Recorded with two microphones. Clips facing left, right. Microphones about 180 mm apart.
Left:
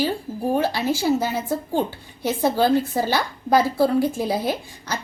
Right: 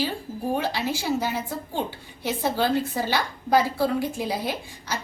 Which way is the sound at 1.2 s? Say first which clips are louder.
Left 4 dB; 45° left (ahead or behind).